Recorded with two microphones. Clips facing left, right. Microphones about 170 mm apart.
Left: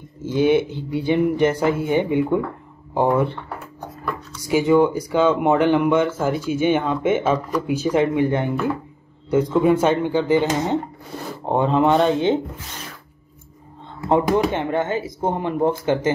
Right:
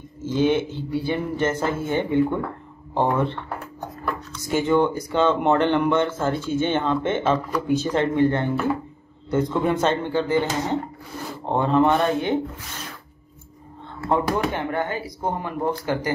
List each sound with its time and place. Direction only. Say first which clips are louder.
0.2 s speech: left 3 dB; 10° left (ahead or behind)
14.0 s speech: left 4 dB; 20° left (ahead or behind)